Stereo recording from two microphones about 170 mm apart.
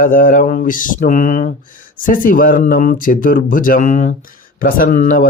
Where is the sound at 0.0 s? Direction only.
55° left (ahead or behind).